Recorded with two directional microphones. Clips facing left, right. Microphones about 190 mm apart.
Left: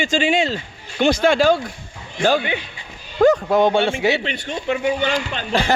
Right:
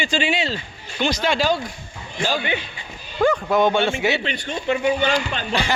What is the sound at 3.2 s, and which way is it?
A man's voice, 35° left (ahead or behind).